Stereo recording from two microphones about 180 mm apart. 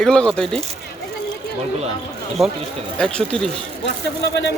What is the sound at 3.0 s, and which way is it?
Speech, 5° left (ahead or behind).